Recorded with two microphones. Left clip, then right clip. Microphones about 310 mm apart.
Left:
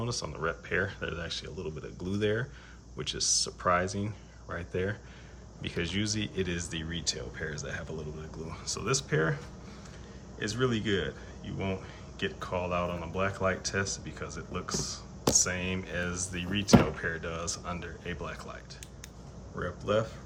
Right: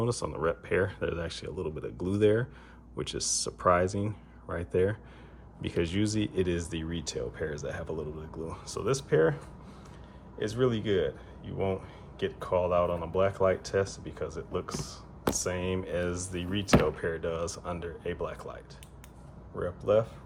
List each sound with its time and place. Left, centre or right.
0.0 s speech: right
10.4 s speech: centre